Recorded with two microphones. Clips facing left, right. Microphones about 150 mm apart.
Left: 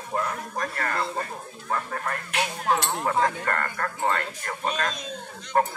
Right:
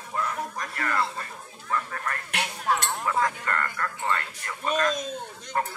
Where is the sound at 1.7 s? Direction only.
30° left (ahead or behind).